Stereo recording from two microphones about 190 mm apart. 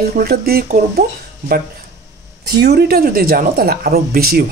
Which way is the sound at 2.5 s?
60° right (ahead or behind).